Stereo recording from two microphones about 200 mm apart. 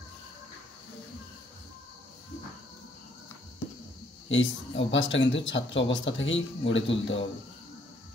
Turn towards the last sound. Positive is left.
turn(degrees=65)  # may be behind; listen again after turning